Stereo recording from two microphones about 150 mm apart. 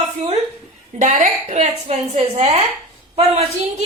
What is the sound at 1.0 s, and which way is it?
Speech, 60° right (ahead or behind).